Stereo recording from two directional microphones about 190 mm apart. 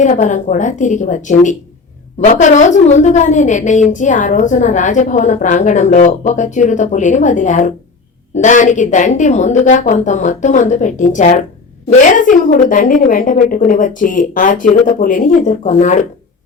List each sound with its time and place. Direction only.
0.0 s a woman's voice: 40° left (ahead or behind)